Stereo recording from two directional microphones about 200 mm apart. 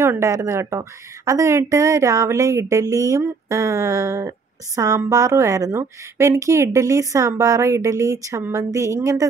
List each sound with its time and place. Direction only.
0.0 s a woman's voice: 15° right (ahead or behind)